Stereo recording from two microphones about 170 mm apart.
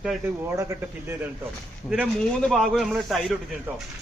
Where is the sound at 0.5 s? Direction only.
15° right (ahead or behind).